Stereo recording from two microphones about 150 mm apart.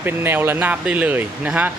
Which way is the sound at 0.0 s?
15° right (ahead or behind).